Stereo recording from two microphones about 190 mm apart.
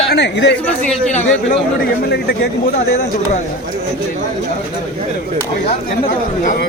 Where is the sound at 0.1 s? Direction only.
65° left (ahead or behind).